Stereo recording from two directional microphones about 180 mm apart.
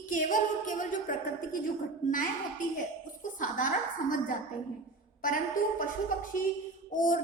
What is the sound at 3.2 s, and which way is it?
Speech, 50° left (ahead or behind).